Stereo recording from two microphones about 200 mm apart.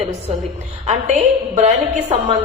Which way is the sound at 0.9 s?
35° right (ahead or behind).